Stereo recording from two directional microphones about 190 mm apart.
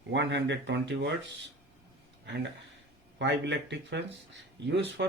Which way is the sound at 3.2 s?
70° right (ahead or behind).